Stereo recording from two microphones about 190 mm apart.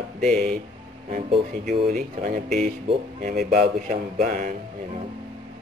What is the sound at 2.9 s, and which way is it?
Speech, 40° right (ahead or behind).